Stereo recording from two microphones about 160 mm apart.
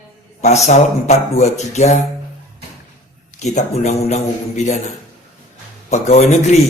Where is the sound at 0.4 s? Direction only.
45° left (ahead or behind).